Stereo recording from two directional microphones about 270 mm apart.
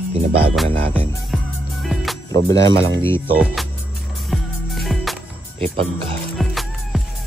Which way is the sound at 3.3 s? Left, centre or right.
Centre.